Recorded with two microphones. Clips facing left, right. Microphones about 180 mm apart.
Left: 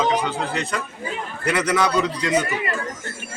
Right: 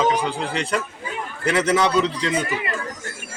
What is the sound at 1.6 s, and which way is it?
Speech, 30° right (ahead or behind).